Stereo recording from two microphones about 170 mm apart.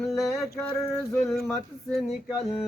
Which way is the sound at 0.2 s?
Centre (ahead or behind).